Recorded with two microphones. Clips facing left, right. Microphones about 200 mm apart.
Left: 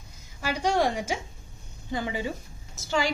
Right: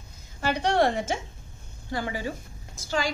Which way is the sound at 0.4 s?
10° left (ahead or behind).